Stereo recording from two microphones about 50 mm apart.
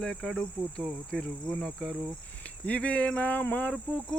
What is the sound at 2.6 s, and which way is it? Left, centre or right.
Speech, left.